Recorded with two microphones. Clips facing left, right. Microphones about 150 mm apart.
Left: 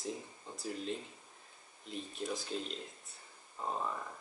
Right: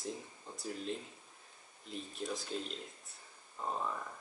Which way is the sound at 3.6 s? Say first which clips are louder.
Even; centre (ahead or behind).